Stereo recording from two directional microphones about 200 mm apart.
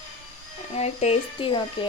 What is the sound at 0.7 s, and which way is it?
Speech, 30° left (ahead or behind).